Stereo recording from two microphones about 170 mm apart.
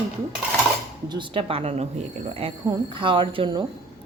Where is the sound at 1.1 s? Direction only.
30° right (ahead or behind).